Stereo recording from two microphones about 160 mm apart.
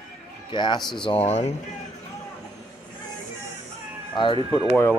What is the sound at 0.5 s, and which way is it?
Speech, 30° left (ahead or behind).